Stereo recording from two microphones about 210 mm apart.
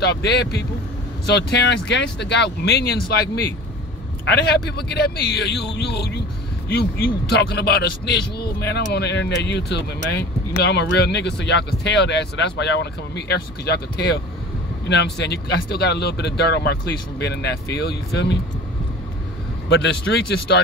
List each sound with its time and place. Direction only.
0.0 s speech: 55° left (ahead or behind)
4.3 s speech: 50° left (ahead or behind)
19.7 s speech: 55° left (ahead or behind)